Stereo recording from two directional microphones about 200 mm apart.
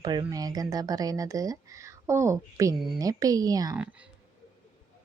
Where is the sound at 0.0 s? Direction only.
20° right (ahead or behind).